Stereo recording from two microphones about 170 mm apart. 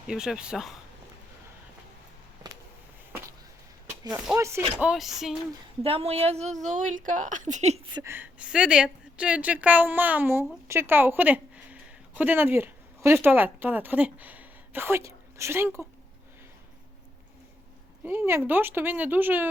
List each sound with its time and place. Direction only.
0.1 s speech: 5° right (ahead or behind)
3.1 s a sound: 15° right (ahead or behind)
4.4 s speech: 15° right (ahead or behind)
4.8 s speech: 5° right (ahead or behind)
5.8 s a woman's voice: 35° right (ahead or behind)
7.9 s a woman's voice: 15° right (ahead or behind)
18.0 s speech: 15° right (ahead or behind)